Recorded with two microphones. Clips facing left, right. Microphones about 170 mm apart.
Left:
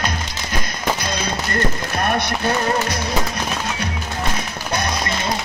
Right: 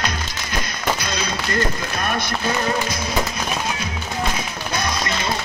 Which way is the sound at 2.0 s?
65° left (ahead or behind).